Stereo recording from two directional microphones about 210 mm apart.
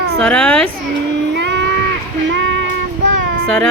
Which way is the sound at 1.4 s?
55° right (ahead or behind).